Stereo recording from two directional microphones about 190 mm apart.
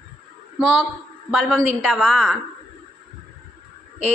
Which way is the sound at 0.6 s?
5° right (ahead or behind).